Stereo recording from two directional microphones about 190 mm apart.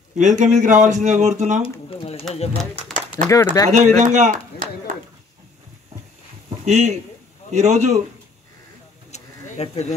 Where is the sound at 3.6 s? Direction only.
40° right (ahead or behind).